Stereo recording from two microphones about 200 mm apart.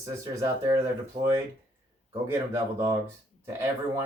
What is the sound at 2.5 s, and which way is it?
Speech, 10° right (ahead or behind).